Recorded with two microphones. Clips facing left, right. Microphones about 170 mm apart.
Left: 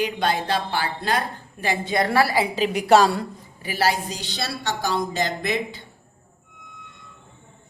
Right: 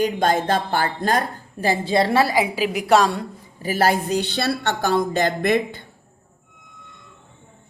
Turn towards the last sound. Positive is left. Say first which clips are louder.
# right 6 dB
turn(degrees=-55)  # may be behind; listen again after turning